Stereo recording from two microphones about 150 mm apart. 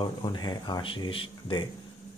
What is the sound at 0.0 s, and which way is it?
Speech, 30° left (ahead or behind).